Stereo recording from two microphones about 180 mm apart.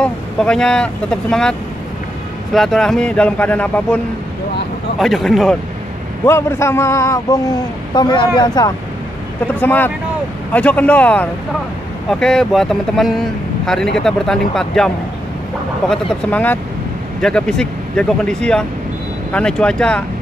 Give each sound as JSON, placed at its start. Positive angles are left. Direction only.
{"t": 0.0, "sound": "speech", "side_deg": 5}
{"t": 6.2, "sound": "a man's voice", "side_deg": 15}
{"t": 9.6, "sound": "a man's voice", "side_deg": 10}
{"t": 15.9, "sound": "a man's voice", "side_deg": 10}